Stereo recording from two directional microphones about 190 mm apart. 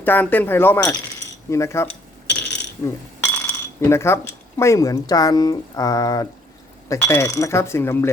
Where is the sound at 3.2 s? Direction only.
10° left (ahead or behind).